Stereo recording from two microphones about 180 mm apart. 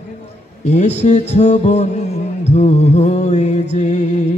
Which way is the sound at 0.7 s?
40° left (ahead or behind).